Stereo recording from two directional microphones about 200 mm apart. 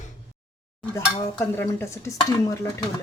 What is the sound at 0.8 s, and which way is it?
Dishes, 10° left (ahead or behind).